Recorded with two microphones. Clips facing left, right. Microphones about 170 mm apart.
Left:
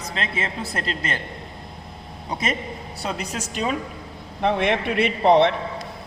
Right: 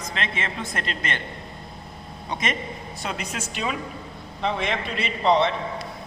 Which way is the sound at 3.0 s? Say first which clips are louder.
Left 3 dB; 35° left (ahead or behind).